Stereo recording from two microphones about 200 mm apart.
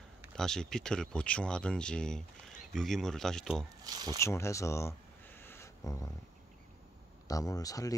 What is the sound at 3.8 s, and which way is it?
Speech, 20° right (ahead or behind).